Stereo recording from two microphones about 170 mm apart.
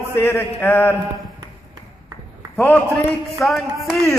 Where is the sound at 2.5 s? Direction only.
10° left (ahead or behind).